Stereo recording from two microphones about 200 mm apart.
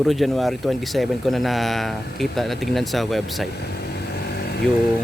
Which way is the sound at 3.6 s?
50° left (ahead or behind).